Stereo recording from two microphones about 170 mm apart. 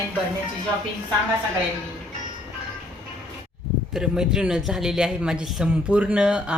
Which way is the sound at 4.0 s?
5° right (ahead or behind).